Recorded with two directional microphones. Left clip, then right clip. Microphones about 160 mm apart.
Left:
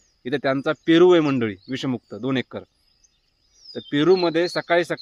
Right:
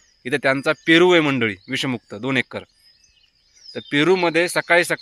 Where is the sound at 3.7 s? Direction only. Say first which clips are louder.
Right 1 dB; 15° right (ahead or behind).